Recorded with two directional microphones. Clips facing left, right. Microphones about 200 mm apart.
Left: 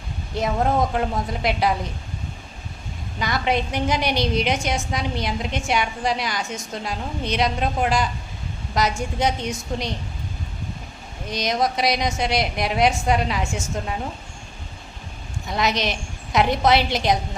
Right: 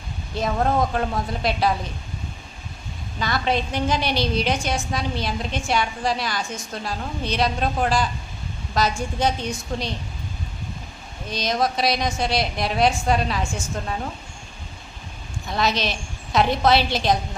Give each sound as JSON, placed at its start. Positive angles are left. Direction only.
{"t": 0.3, "sound": "a woman's voice", "side_deg": 20}
{"t": 3.2, "sound": "a woman's voice", "side_deg": 20}
{"t": 11.3, "sound": "a woman's voice", "side_deg": 20}
{"t": 15.4, "sound": "a woman's voice", "side_deg": 20}